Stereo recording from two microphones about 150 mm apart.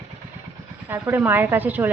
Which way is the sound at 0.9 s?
15° right (ahead or behind).